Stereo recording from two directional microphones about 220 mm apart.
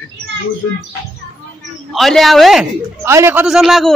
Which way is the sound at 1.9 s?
Centre (ahead or behind).